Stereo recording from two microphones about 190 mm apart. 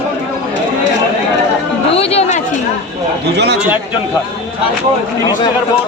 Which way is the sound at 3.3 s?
60° right (ahead or behind).